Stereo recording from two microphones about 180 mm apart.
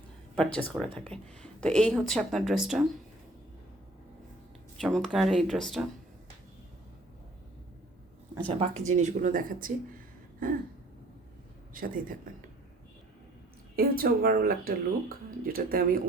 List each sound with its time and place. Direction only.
0.3 s speech: 5° left (ahead or behind)
4.8 s speech: centre (ahead or behind)
8.5 s speech: 40° right (ahead or behind)
11.7 s speech: 50° right (ahead or behind)
13.7 s speech: 55° right (ahead or behind)